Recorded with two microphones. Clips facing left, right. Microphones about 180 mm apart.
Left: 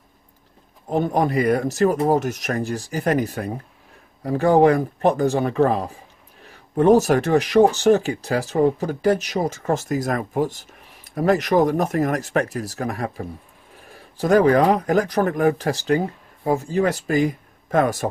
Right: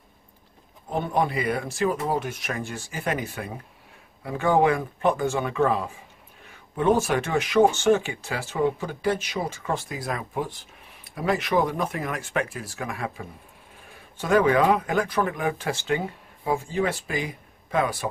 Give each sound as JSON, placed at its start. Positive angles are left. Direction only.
{"t": 0.8, "sound": "speech", "side_deg": 40}